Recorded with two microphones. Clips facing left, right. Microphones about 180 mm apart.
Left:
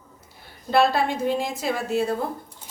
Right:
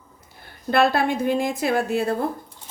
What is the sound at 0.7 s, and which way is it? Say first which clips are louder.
Speech: right 1 dB; 60° right (ahead or behind).